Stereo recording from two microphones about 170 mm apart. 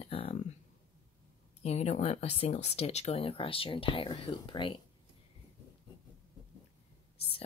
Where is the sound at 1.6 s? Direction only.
40° left (ahead or behind).